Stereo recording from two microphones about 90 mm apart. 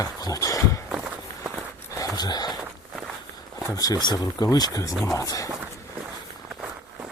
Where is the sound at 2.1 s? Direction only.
50° left (ahead or behind).